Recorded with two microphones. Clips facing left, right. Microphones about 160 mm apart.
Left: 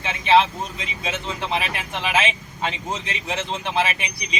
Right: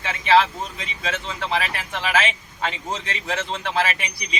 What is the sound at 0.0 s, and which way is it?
Speech, 25° left (ahead or behind).